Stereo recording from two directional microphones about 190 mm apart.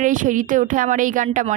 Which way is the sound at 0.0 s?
40° right (ahead or behind).